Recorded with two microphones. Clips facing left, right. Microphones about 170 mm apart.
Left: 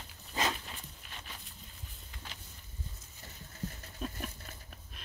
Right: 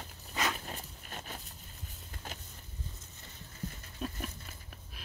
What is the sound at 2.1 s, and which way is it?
Vehicle, 45° right (ahead or behind).